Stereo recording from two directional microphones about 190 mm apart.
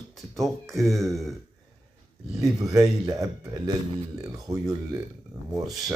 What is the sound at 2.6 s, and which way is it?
Speech, 20° right (ahead or behind).